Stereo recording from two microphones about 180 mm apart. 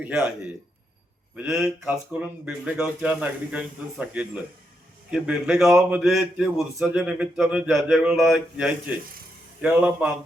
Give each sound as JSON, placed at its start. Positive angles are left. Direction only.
{"t": 0.0, "sound": "speech", "side_deg": -10}
{"t": 1.4, "sound": "speech", "side_deg": -5}
{"t": 5.6, "sound": "speech", "side_deg": -15}
{"t": 6.0, "sound": "speech", "side_deg": 0}